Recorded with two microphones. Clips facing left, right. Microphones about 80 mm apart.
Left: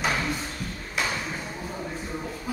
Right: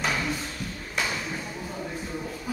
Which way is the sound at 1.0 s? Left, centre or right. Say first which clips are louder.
Left 1 dB; centre.